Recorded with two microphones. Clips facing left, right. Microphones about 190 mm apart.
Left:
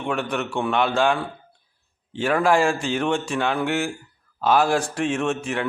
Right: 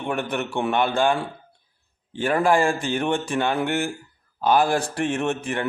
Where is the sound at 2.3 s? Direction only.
Centre (ahead or behind).